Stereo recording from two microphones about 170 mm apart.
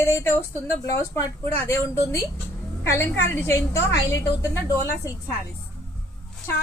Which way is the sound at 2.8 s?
15° left (ahead or behind).